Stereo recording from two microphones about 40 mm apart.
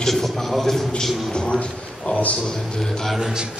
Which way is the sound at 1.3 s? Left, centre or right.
Left.